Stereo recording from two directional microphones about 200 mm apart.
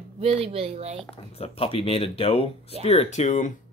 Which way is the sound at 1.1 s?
30° left (ahead or behind).